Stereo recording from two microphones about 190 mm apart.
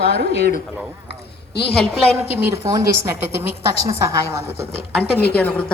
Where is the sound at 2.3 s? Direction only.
10° right (ahead or behind).